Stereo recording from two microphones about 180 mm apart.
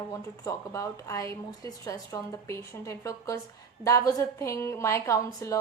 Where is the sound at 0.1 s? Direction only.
15° left (ahead or behind).